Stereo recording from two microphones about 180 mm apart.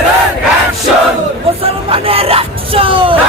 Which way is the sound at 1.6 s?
30° right (ahead or behind).